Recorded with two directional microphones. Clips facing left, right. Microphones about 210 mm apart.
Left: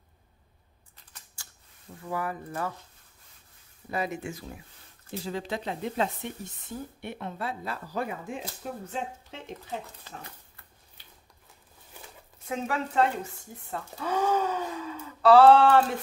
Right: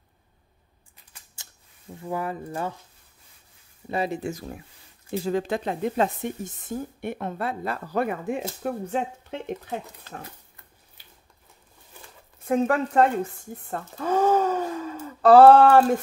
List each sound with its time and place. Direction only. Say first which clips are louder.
1.4 s camera: right 2 dB; 20° right (ahead or behind)
2.0 s speech: right 3 dB; 25° right (ahead or behind)
3.9 s speech: right 5 dB; 30° right (ahead or behind); by 10.2 s 60° right (ahead or behind)
12.4 s speech: right 9 dB; 50° right (ahead or behind)